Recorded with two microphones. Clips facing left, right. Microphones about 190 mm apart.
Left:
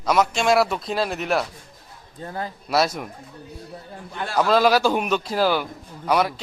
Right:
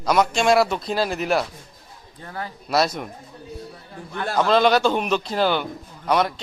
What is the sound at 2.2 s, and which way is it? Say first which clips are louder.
Speech: left 3 dB; 25° left (ahead or behind).